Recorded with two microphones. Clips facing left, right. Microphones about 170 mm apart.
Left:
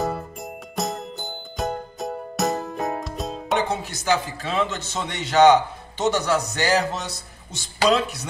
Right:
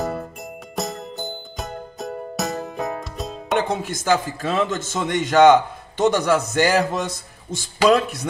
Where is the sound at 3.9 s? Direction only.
50° right (ahead or behind).